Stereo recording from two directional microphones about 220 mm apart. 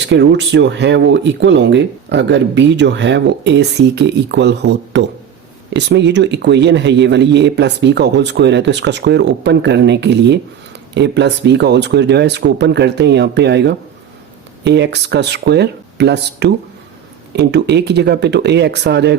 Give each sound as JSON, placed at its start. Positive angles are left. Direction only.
{"t": 0.0, "sound": "a man's voice", "side_deg": -50}